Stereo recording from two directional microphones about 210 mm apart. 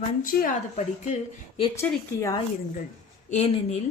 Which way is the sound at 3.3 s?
30° left (ahead or behind).